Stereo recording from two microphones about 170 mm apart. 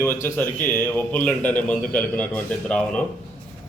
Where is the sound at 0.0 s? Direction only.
15° left (ahead or behind).